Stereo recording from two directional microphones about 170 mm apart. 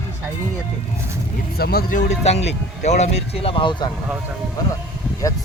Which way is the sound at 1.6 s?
60° left (ahead or behind).